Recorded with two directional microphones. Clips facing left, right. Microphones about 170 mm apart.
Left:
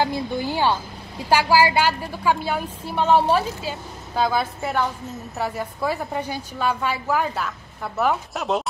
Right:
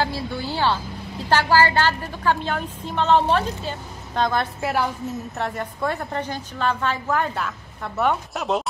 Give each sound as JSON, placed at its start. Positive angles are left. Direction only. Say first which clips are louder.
{"t": 0.0, "sound": "a woman's voice", "louder": "left 3 dB", "side_deg": 15}
{"t": 4.6, "sound": "a woman's voice", "louder": "right 1 dB", "side_deg": -5}